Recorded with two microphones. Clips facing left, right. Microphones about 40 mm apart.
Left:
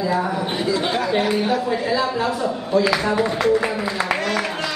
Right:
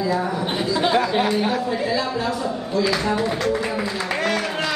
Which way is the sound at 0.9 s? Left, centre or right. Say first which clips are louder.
Right 1 dB; centre.